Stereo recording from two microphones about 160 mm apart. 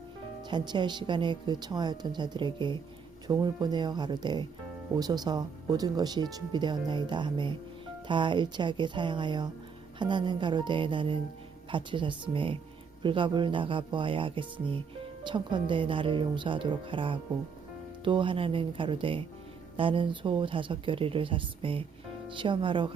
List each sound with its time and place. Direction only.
0.5 s speech: 30° right (ahead or behind)